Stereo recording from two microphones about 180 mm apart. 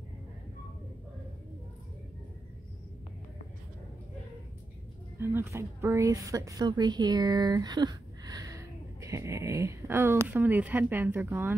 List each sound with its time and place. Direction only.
5.2 s a woman's voice: 15° right (ahead or behind)